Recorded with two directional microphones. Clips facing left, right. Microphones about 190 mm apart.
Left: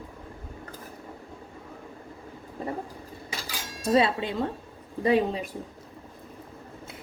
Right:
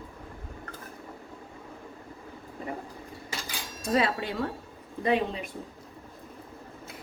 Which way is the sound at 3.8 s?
30° left (ahead or behind).